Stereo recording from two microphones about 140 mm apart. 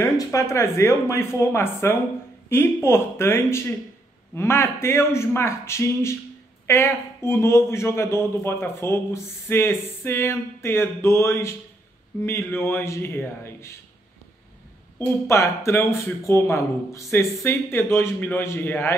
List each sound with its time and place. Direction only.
0.0 s speech: 20° left (ahead or behind)
15.0 s speech: 20° left (ahead or behind)